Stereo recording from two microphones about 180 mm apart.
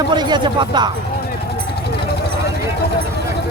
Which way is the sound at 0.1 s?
25° right (ahead or behind).